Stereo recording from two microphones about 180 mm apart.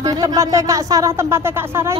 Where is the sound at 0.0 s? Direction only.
20° right (ahead or behind).